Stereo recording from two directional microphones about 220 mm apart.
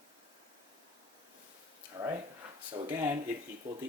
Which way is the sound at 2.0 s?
20° right (ahead or behind).